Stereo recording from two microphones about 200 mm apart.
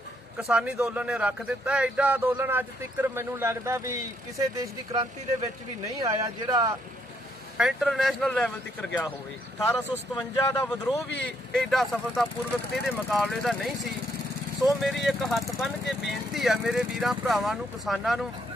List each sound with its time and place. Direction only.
0.4 s speech: 5° right (ahead or behind)
7.5 s speech: centre (ahead or behind)
11.5 s speech: centre (ahead or behind)